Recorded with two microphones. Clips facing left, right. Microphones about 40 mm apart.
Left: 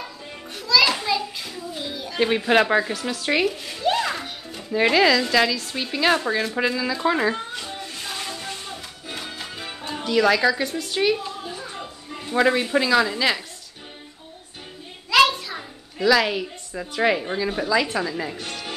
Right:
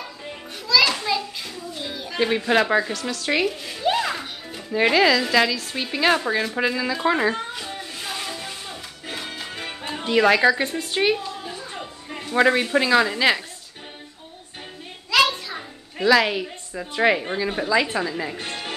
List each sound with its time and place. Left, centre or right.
0.7 s children playing: centre
1.8 s a woman's voice: centre
6.7 s music: centre
9.5 s music: right
9.8 s a woman's voice: right
12.4 s a woman's voice: centre
15.0 s a sound: centre
16.0 s a woman's voice: centre
18.4 s music: right